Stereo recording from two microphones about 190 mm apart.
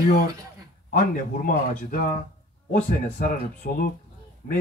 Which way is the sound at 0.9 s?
45° left (ahead or behind).